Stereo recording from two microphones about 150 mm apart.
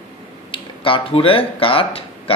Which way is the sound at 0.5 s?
35° left (ahead or behind).